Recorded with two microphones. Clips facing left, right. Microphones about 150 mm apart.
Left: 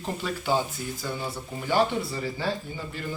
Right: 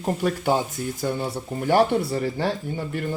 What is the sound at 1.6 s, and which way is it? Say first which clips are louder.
Speech: right 5 dB; 60° right (ahead or behind).